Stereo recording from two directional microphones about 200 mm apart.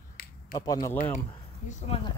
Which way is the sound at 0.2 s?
50° left (ahead or behind).